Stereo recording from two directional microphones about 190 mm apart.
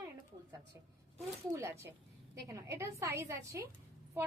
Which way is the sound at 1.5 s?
15° right (ahead or behind).